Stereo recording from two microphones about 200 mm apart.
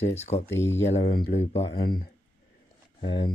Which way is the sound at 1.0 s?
45° left (ahead or behind).